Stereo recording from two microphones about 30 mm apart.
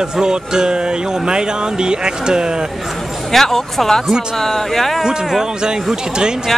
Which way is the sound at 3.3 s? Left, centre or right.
Centre.